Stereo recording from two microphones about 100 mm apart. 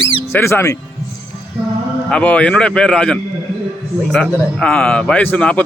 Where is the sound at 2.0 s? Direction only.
10° left (ahead or behind).